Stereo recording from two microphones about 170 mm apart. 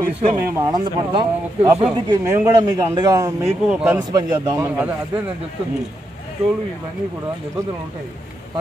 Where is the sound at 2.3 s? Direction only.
15° right (ahead or behind).